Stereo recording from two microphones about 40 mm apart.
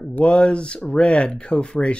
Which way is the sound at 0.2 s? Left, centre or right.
Left.